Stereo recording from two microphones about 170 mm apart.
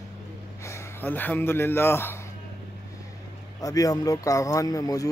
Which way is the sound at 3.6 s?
20° left (ahead or behind).